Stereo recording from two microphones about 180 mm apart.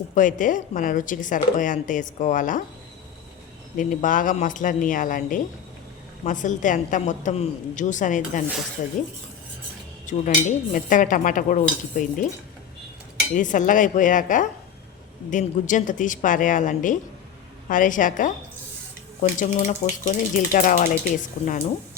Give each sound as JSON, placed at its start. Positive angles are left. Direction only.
{"t": 0.1, "sound": "speech", "side_deg": 45}
{"t": 3.8, "sound": "speech", "side_deg": 50}
{"t": 10.1, "sound": "speech", "side_deg": 45}
{"t": 13.3, "sound": "speech", "side_deg": 45}
{"t": 19.4, "sound": "speech", "side_deg": 45}